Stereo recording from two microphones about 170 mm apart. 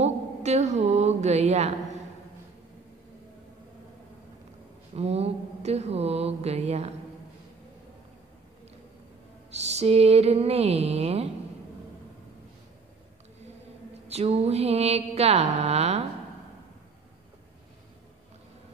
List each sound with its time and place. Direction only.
0.0 s a sound: 40° right (ahead or behind)
4.9 s mantra: 35° right (ahead or behind)
9.5 s mantra: 40° right (ahead or behind)
14.0 s mantra: 40° right (ahead or behind)